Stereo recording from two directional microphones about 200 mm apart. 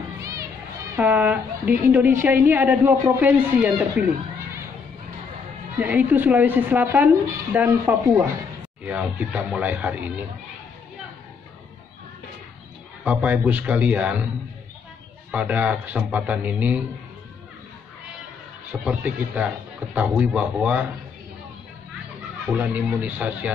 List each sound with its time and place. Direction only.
0.2 s children playing: 15° right (ahead or behind)
0.9 s speech: 10° right (ahead or behind)
5.8 s speech: 10° right (ahead or behind)
13.0 s speech: 10° right (ahead or behind)
15.3 s speech: 10° right (ahead or behind)
18.7 s speech: 5° right (ahead or behind)
22.5 s speech: 10° right (ahead or behind)